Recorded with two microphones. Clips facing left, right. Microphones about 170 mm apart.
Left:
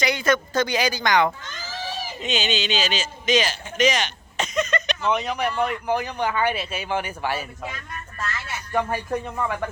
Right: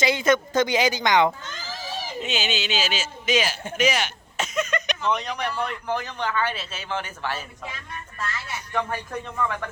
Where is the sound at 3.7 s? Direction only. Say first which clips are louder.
Left 2 dB; 10° right (ahead or behind).